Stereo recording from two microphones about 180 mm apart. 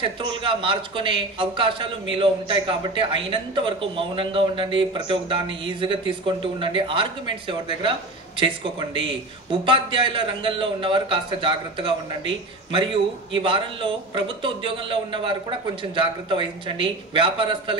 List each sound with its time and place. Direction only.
0.0 s a man's voice: 30° right (ahead or behind)